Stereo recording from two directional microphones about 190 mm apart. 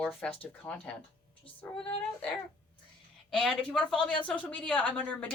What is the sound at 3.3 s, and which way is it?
Speech, 5° left (ahead or behind).